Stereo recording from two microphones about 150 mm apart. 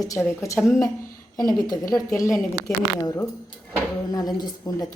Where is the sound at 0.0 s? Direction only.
20° left (ahead or behind).